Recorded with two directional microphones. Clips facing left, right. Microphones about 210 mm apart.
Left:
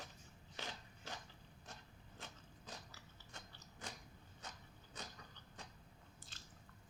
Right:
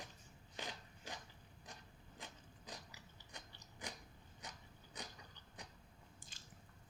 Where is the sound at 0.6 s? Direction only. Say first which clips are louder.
Right 1 dB; 15° right (ahead or behind).